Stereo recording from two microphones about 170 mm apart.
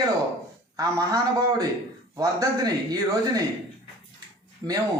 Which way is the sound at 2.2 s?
20° right (ahead or behind).